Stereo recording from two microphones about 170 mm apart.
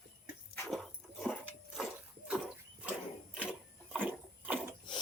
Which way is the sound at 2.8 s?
5° right (ahead or behind).